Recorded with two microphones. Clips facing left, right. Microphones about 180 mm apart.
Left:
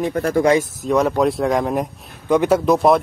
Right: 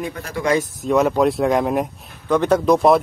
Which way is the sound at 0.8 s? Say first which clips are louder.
Even; centre (ahead or behind).